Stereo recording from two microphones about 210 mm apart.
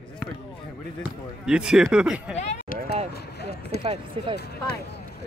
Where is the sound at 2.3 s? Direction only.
30° left (ahead or behind).